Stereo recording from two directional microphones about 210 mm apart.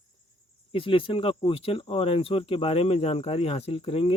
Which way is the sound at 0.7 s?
25° left (ahead or behind).